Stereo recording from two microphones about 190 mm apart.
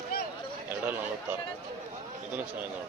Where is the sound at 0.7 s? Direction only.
10° right (ahead or behind).